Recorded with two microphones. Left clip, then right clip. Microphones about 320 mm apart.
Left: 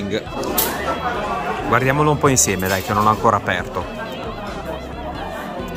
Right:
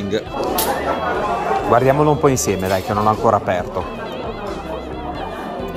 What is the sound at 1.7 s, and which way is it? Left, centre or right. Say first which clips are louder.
Speech: right 2 dB; centre.